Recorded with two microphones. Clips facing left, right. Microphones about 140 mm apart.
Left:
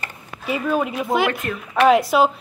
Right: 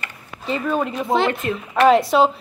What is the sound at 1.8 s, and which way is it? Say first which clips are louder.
Speech: right 1 dB; centre (ahead or behind).